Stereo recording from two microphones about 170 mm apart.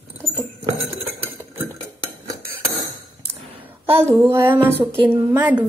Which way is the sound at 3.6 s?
15° right (ahead or behind).